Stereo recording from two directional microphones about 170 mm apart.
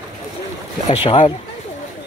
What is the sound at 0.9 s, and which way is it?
Speech, 35° left (ahead or behind).